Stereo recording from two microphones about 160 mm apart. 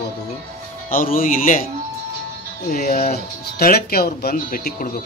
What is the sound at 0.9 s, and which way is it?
Speech, 60° left (ahead or behind).